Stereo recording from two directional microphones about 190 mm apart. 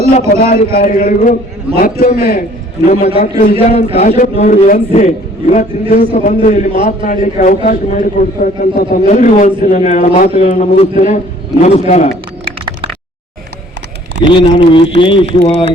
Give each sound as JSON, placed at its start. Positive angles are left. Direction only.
{"t": 0.3, "sound": "a man's voice", "side_deg": 50}
{"t": 3.2, "sound": "a man's voice", "side_deg": 50}
{"t": 3.6, "sound": "a man's voice", "side_deg": 30}
{"t": 8.9, "sound": "a man's voice", "side_deg": 40}
{"t": 14.3, "sound": "speech", "side_deg": 25}